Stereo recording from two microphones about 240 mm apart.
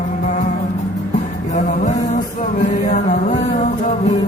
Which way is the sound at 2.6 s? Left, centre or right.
Left.